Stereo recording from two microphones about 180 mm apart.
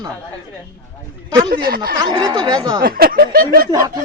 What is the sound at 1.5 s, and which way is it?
Speech, 55° right (ahead or behind).